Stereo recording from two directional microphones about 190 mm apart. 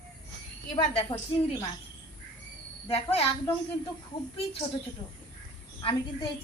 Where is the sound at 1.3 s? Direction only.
30° left (ahead or behind).